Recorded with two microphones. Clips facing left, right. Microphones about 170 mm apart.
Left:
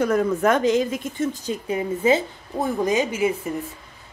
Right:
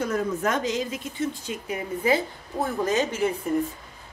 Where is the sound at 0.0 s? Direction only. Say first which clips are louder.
Left 6 dB; 60° left (ahead or behind).